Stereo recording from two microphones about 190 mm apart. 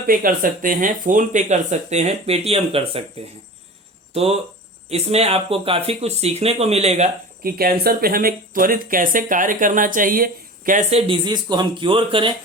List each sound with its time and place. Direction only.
0.1 s speech: 45° right (ahead or behind); by 3.0 s 30° right (ahead or behind)
4.1 s speech: 30° right (ahead or behind)
7.4 s speech: 50° right (ahead or behind); by 12.3 s 25° right (ahead or behind)